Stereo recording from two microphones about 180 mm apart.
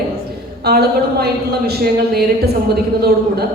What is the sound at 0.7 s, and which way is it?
Speech, 60° right (ahead or behind).